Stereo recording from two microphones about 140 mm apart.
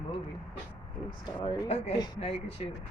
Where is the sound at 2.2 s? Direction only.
45° left (ahead or behind).